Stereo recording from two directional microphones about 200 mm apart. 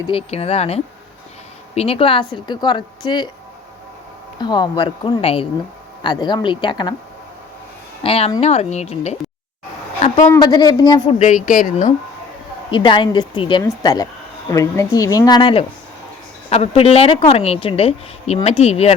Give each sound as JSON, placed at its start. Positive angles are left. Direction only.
{"t": 0.1, "sound": "a woman's voice", "side_deg": 30}
{"t": 4.4, "sound": "speech", "side_deg": 20}
{"t": 8.0, "sound": "a woman's voice", "side_deg": 30}
{"t": 10.2, "sound": "speech", "side_deg": 15}
{"t": 11.2, "sound": "a woman's voice", "side_deg": 40}
{"t": 12.7, "sound": "speech", "side_deg": 25}